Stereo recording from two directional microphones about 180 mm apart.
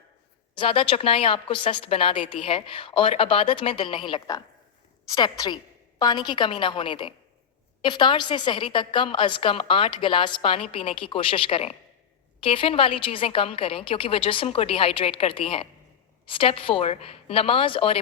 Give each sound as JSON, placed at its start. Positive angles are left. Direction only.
{"t": 0.5, "sound": "a woman's voice", "side_deg": 30}